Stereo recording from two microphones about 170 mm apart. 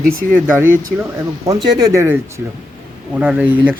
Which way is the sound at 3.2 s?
10° right (ahead or behind).